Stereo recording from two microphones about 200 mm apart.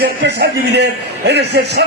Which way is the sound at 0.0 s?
55° right (ahead or behind).